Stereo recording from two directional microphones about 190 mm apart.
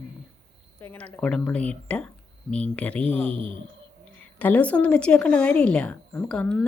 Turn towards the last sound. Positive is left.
turn(degrees=5)  # may be behind; listen again after turning